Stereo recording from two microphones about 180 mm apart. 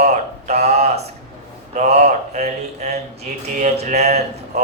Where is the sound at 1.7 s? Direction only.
40° right (ahead or behind).